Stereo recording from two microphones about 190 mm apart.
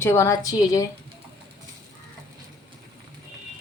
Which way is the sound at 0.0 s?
15° left (ahead or behind).